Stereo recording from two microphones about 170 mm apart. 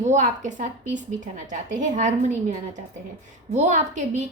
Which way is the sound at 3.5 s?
45° right (ahead or behind).